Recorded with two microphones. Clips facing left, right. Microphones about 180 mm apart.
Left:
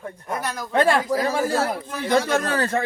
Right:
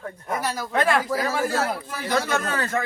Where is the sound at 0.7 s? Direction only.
30° left (ahead or behind).